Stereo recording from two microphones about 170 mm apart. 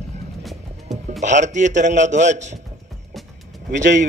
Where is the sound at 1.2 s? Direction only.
45° right (ahead or behind).